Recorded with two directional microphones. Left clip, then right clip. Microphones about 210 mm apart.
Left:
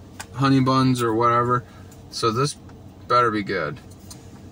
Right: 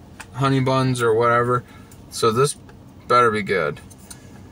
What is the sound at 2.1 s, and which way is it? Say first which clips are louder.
Speech: right 4 dB; 15° right (ahead or behind).